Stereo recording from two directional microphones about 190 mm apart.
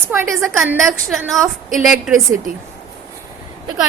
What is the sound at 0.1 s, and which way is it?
Speech, 15° right (ahead or behind).